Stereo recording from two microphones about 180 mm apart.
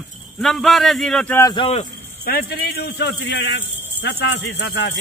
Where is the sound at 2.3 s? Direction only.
60° left (ahead or behind); by 4.9 s 80° left.